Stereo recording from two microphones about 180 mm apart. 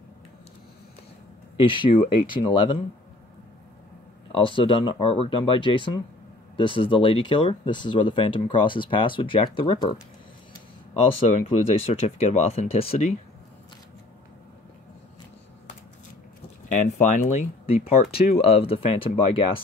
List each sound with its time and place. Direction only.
1.6 s speech: 30° left (ahead or behind)
4.3 s speech: 30° left (ahead or behind)
11.9 s speech: 35° left (ahead or behind)
16.7 s speech: 40° left (ahead or behind)